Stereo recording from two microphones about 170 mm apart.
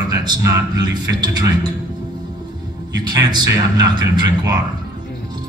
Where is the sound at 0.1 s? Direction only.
25° right (ahead or behind).